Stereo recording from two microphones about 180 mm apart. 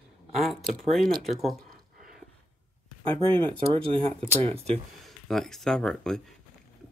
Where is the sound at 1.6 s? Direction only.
50° right (ahead or behind).